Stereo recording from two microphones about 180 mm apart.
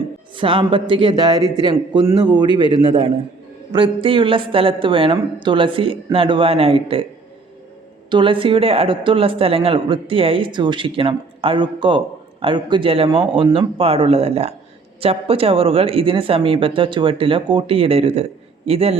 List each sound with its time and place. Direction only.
0.3 s speech: 30° right (ahead or behind)
8.1 s speech: 30° right (ahead or behind)